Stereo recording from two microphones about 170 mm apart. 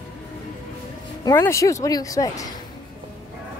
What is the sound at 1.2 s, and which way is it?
Speech, 20° left (ahead or behind).